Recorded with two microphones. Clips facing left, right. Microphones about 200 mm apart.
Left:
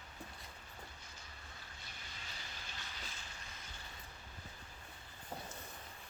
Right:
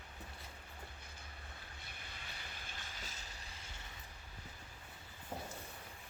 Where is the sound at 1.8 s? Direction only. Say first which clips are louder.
Even; 55° right (ahead or behind).